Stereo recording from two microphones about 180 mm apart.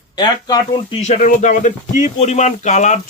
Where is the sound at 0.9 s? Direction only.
40° left (ahead or behind).